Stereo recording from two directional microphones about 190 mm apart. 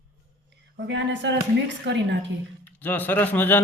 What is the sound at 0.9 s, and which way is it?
Speech, 70° right (ahead or behind).